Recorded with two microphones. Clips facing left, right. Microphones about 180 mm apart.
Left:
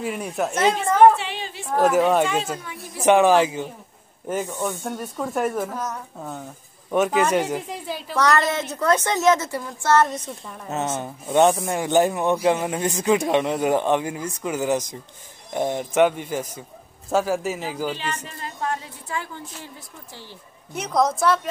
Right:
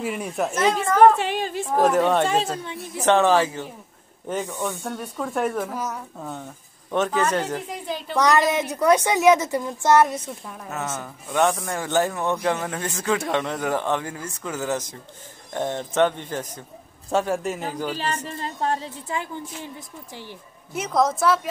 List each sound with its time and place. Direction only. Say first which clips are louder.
0.0 s speech: even; centre (ahead or behind)
1.1 s speech: right 5 dB; 45° right (ahead or behind)
1.7 s speech: left 1 dB; 5° left (ahead or behind)
2.5 s a woman's voice: right 1 dB; 25° right (ahead or behind)
3.0 s speech: left 2 dB; 10° left (ahead or behind)
4.8 s speech: left 1 dB; 5° left (ahead or behind)
8.2 s a woman's voice: right 1 dB; 15° right (ahead or behind)
10.7 s speech: left 5 dB; 25° left (ahead or behind); by 17.9 s 5° left (ahead or behind)
17.9 s a woman's voice: right 3 dB; 35° right (ahead or behind)
20.7 s speech: even; centre (ahead or behind)